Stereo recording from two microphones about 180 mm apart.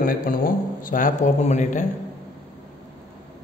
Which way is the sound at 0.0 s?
50° left (ahead or behind).